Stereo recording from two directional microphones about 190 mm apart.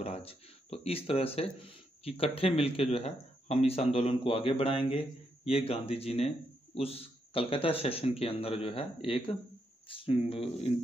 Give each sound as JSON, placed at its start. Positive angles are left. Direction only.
{"t": 0.0, "sound": "speech", "side_deg": 30}